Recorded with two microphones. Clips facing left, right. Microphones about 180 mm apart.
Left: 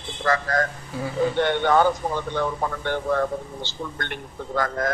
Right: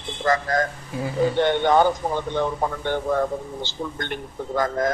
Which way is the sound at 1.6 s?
20° right (ahead or behind).